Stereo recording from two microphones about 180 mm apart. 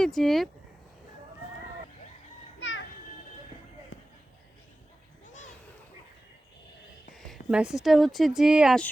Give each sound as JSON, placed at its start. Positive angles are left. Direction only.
{"t": 0.0, "sound": "speech", "side_deg": 0}
{"t": 2.6, "sound": "children playing", "side_deg": 90}
{"t": 7.3, "sound": "speech", "side_deg": -5}